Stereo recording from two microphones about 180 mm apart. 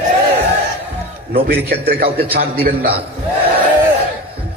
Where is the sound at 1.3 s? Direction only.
60° right (ahead or behind).